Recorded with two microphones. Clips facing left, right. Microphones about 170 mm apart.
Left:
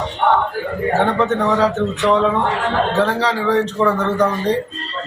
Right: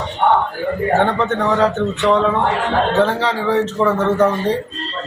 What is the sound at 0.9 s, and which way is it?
Speech, centre (ahead or behind).